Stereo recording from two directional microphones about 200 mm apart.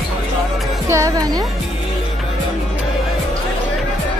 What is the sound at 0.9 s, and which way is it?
Speech, 15° right (ahead or behind).